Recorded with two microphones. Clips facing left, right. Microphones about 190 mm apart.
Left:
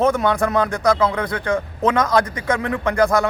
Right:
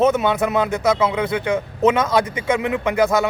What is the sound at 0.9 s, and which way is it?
Speech, 5° right (ahead or behind).